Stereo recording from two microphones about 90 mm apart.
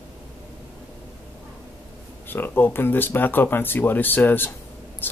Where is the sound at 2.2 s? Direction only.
25° left (ahead or behind).